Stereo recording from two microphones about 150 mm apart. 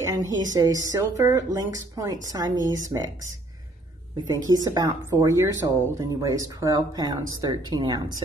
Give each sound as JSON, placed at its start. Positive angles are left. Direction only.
{"t": 0.0, "sound": "speech", "side_deg": -25}
{"t": 4.5, "sound": "speech", "side_deg": -25}